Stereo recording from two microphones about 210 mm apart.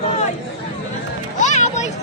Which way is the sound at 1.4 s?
35° left (ahead or behind).